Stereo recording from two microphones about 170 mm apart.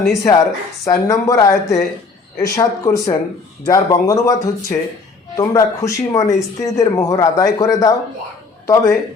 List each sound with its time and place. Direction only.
0.1 s speech: 20° left (ahead or behind)